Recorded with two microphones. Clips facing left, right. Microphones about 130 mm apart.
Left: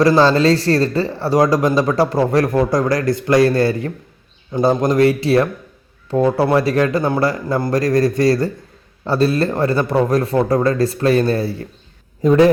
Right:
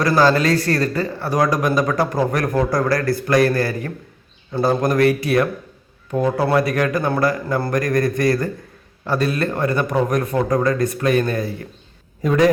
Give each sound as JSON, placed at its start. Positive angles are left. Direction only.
{"t": 0.0, "sound": "a man's voice", "side_deg": 25}